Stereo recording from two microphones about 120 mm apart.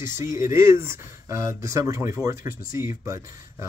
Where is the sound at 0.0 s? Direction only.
25° right (ahead or behind).